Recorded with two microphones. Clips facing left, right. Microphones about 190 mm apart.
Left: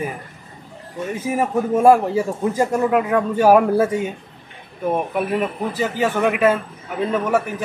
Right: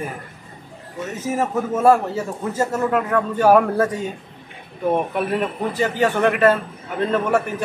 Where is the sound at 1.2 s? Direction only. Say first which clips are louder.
Left 1 dB; 10° left (ahead or behind).